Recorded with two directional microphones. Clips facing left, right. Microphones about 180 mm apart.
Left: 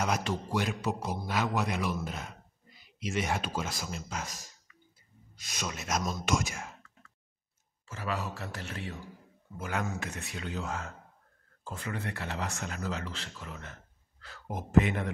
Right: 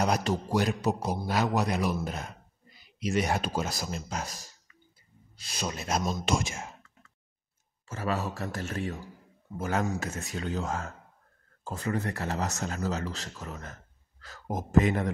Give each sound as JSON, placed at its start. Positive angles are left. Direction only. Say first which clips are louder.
{"t": 0.0, "sound": "a man's voice", "louder": "right 4 dB", "side_deg": -40}
{"t": 7.8, "sound": "a man's voice", "louder": "right 4 dB", "side_deg": -45}